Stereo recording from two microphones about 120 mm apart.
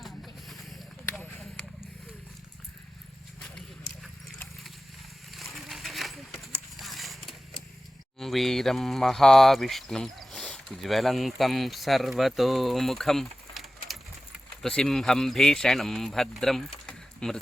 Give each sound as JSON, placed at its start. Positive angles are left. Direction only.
{"t": 0.0, "sound": "vehicle", "side_deg": 0}
{"t": 5.3, "sound": "a sound", "side_deg": 0}
{"t": 8.2, "sound": "speech", "side_deg": 0}